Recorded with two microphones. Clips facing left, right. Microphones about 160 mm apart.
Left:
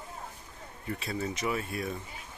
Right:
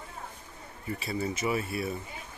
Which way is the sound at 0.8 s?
Centre (ahead or behind).